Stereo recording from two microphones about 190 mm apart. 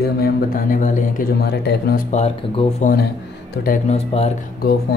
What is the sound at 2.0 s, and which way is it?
Speech, 35° left (ahead or behind).